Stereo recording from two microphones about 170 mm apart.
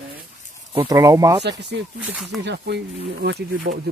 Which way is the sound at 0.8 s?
20° right (ahead or behind).